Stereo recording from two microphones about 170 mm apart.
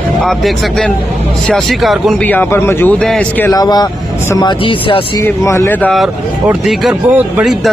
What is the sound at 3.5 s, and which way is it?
Speech, 25° left (ahead or behind).